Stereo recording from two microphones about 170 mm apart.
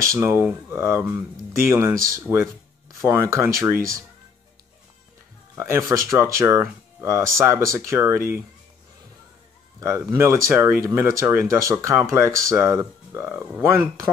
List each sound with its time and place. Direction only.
0.0 s speech: 15° right (ahead or behind)
5.6 s speech: 15° right (ahead or behind)
9.8 s speech: 20° right (ahead or behind)